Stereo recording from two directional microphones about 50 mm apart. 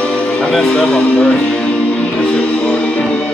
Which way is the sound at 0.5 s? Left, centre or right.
Centre.